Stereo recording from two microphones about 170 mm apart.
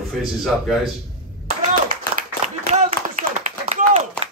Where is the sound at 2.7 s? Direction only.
40° right (ahead or behind).